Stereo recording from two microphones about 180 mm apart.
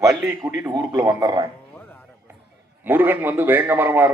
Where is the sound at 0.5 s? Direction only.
20° right (ahead or behind).